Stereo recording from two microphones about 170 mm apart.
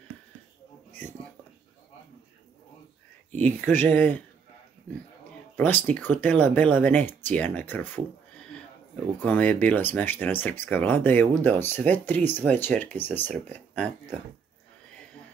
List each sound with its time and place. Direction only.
3.4 s speech: 10° left (ahead or behind)
5.6 s speech: 10° left (ahead or behind)
9.2 s speech: 10° left (ahead or behind)